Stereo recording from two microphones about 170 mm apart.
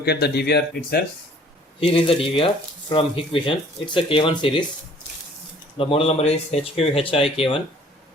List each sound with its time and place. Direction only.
0.0 s speech: 70° left (ahead or behind)
1.9 s speech: 35° left (ahead or behind)
5.7 s speech: 35° left (ahead or behind)